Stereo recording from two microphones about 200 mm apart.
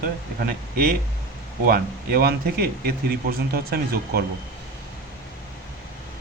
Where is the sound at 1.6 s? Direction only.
50° right (ahead or behind).